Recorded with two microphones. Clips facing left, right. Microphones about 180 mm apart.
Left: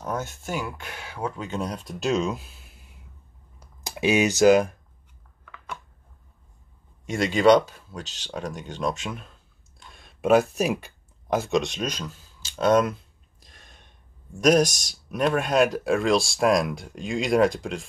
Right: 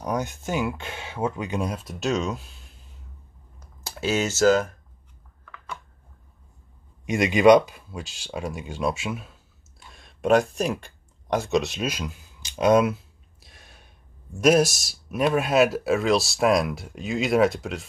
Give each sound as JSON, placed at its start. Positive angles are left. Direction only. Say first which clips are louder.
{"t": 0.0, "sound": "speech", "louder": "right 3 dB", "side_deg": -15}
{"t": 7.1, "sound": "speech", "louder": "right 2 dB", "side_deg": -15}